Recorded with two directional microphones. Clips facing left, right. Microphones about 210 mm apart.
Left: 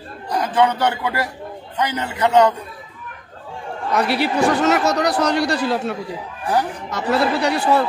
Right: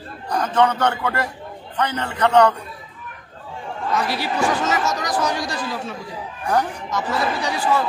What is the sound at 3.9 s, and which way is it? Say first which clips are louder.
A man's voice: left 5 dB; 65° left (ahead or behind).